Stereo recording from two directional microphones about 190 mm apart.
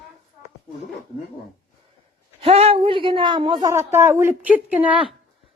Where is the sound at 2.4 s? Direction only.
30° right (ahead or behind); by 5.0 s 10° right (ahead or behind).